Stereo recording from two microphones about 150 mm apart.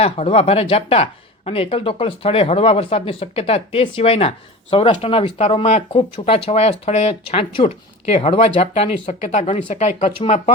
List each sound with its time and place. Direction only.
0.0 s speech: 40° left (ahead or behind)